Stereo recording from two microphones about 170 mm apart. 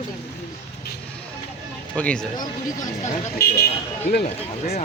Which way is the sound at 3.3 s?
65° left (ahead or behind).